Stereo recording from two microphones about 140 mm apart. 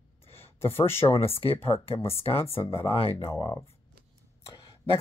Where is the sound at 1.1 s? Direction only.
45° left (ahead or behind).